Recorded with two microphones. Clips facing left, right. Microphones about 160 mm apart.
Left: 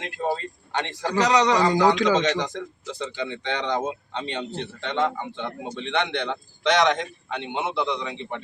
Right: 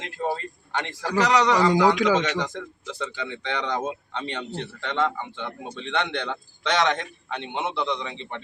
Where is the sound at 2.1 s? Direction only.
15° left (ahead or behind).